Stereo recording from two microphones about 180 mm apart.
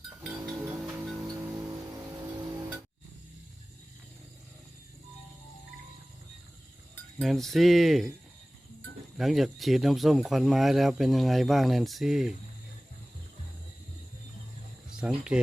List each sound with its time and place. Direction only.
0.2 s livestock: 5° right (ahead or behind)
0.6 s music: 5° right (ahead or behind)
1.5 s vehicle: 15° right (ahead or behind)
7.2 s speech: centre (ahead or behind)
9.1 s speech: centre (ahead or behind)
14.8 s speech: 5° right (ahead or behind)